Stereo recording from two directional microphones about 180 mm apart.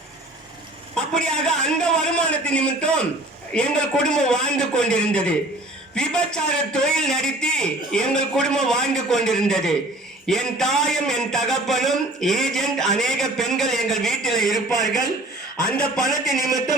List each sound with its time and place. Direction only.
0.9 s a man's voice: 5° left (ahead or behind)
16.4 s speech: 20° right (ahead or behind)